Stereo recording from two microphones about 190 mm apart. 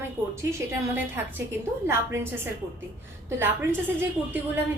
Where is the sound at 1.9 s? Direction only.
15° right (ahead or behind).